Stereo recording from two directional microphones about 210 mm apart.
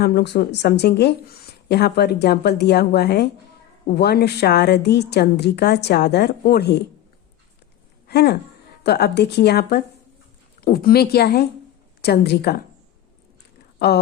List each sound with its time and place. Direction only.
0.0 s a woman's voice: 50° left (ahead or behind)
8.0 s a woman's voice: 50° left (ahead or behind)
13.7 s speech: 50° left (ahead or behind)